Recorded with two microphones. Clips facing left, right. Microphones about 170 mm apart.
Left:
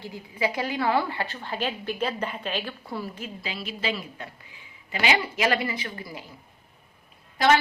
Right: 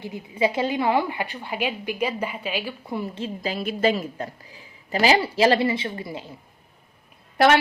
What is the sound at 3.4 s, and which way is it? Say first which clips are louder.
A woman's voice: right 9 dB; 45° right (ahead or behind).